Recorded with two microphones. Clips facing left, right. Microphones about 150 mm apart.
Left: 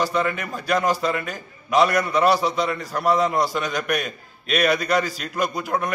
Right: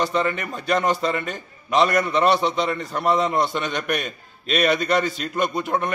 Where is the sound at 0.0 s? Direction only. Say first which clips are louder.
Even; 5° left (ahead or behind).